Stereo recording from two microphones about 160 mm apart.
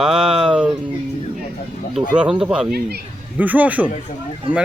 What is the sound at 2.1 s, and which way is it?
Speech, 5° right (ahead or behind).